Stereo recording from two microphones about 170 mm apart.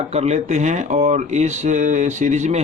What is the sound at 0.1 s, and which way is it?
Speech, 40° right (ahead or behind).